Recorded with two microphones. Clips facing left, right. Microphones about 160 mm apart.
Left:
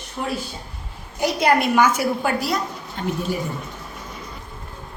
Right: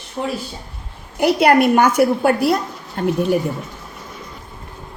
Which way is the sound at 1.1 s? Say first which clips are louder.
Right 6 dB; 60° right (ahead or behind).